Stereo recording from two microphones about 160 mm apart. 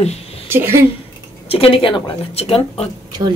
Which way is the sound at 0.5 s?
15° right (ahead or behind).